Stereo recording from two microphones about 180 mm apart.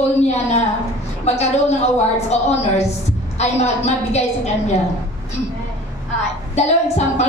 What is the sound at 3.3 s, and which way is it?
Speech, 35° left (ahead or behind).